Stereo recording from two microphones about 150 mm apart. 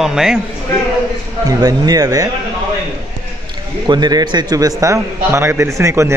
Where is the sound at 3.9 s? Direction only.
25° right (ahead or behind).